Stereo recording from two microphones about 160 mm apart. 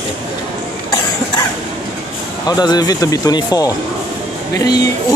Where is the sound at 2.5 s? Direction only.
25° left (ahead or behind).